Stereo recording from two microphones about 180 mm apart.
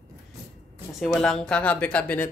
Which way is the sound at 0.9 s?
Centre (ahead or behind).